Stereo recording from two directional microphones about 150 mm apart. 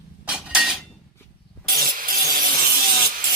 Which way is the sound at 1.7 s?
70° right (ahead or behind).